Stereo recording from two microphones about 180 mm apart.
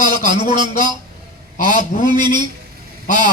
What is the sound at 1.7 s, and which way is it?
Speech, 45° left (ahead or behind).